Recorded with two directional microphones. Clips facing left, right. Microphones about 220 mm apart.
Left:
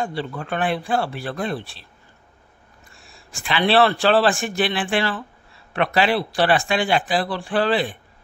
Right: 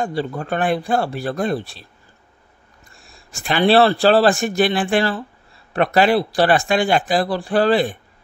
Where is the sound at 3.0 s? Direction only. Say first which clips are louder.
Right 4 dB; 45° right (ahead or behind).